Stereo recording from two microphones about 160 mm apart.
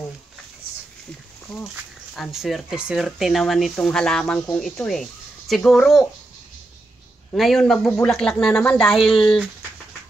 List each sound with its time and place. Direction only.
2.1 s speech: centre (ahead or behind)
7.3 s speech: centre (ahead or behind)